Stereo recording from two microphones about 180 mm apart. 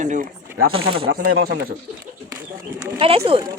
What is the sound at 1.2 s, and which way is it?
Speech, 55° right (ahead or behind).